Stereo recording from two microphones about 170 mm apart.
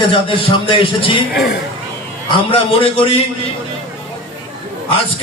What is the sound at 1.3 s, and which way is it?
Speech, 75° left (ahead or behind).